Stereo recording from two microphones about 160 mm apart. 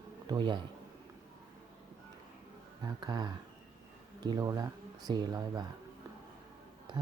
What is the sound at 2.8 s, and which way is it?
Speech, 25° right (ahead or behind).